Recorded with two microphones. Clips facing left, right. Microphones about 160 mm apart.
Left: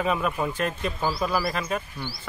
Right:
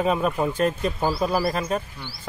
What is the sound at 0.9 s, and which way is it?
Speech, 25° right (ahead or behind).